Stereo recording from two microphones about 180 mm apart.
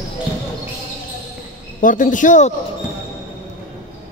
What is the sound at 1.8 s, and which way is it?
Speech, 45° left (ahead or behind).